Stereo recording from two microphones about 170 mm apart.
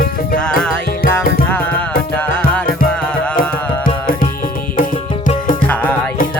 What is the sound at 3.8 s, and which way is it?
Music, 55° left (ahead or behind).